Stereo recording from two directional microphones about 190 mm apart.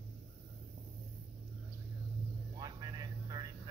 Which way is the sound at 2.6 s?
20° right (ahead or behind).